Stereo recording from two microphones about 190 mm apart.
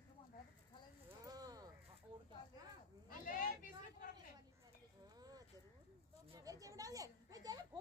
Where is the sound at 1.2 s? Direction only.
20° right (ahead or behind).